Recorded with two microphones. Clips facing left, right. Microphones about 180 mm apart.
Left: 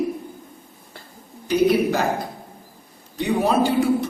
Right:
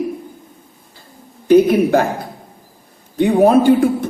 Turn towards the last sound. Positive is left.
turn(degrees=-55)  # may be behind; listen again after turning